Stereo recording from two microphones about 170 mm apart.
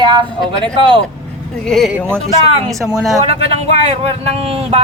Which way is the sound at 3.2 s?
35° right (ahead or behind).